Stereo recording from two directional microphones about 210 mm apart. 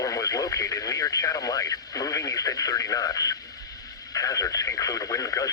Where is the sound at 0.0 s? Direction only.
15° left (ahead or behind).